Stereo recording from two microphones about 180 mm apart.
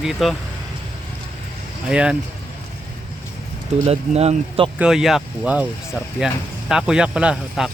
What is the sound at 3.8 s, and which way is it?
Speech, 35° right (ahead or behind).